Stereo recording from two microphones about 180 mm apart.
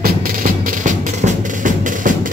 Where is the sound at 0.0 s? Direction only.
50° right (ahead or behind).